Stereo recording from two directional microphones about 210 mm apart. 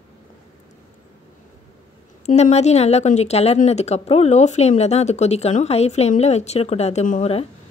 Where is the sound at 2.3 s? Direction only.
30° left (ahead or behind).